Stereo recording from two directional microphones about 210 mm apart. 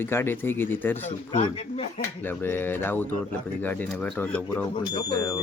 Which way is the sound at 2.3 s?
10° left (ahead or behind).